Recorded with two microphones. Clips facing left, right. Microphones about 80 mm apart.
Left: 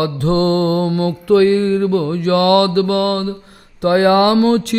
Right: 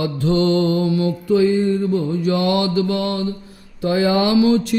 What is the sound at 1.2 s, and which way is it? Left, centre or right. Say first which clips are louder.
Mantra: left 5 dB; left.